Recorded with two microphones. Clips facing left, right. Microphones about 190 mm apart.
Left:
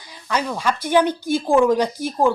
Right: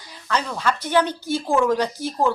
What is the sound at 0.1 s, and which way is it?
Speech, 10° left (ahead or behind).